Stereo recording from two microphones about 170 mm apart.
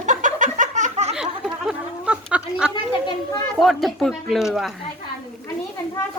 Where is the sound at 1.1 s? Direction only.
5° right (ahead or behind).